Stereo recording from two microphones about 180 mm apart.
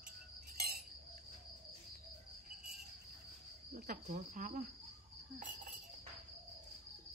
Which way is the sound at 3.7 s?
50° right (ahead or behind).